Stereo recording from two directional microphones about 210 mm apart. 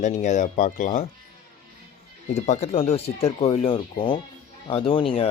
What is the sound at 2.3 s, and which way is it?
Speech, 35° left (ahead or behind).